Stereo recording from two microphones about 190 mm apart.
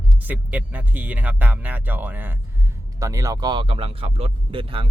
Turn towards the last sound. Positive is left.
turn(degrees=-25)  # may be behind; listen again after turning